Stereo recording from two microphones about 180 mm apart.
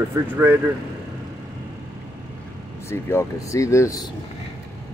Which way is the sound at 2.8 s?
15° left (ahead or behind).